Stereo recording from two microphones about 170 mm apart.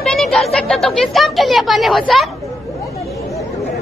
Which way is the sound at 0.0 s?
Centre (ahead or behind).